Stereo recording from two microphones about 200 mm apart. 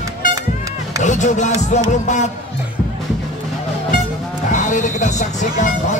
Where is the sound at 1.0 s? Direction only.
35° left (ahead or behind).